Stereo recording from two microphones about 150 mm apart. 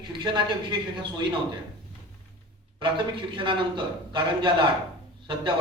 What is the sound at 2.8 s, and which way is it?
A man's voice, 30° right (ahead or behind).